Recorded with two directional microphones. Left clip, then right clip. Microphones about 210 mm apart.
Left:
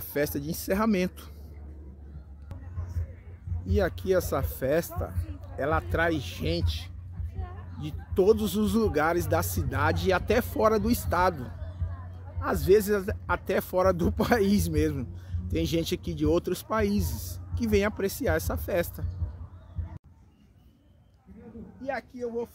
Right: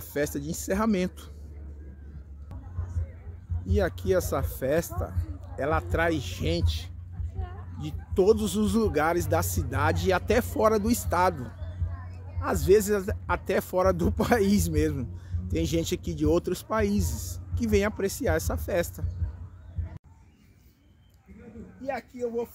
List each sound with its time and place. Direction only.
0.0 s speech: 5° left (ahead or behind)
3.6 s speech: centre (ahead or behind)
21.8 s speech: 20° right (ahead or behind)